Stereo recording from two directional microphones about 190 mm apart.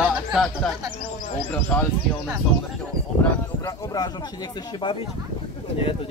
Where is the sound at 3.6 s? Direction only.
20° left (ahead or behind).